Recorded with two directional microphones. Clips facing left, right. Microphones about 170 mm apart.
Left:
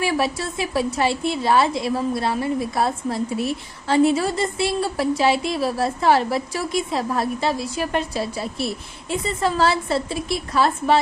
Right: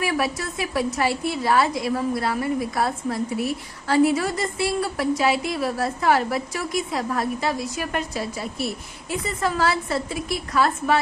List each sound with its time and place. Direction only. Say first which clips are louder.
0.0 s a woman's voice: left 2 dB; 25° left (ahead or behind)